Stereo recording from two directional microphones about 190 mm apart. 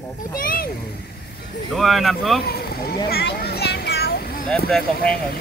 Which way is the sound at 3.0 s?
55° left (ahead or behind).